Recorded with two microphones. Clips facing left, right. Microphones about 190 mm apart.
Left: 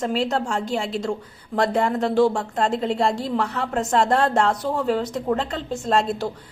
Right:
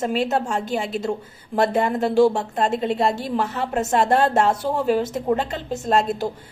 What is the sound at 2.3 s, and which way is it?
Speech, 20° right (ahead or behind).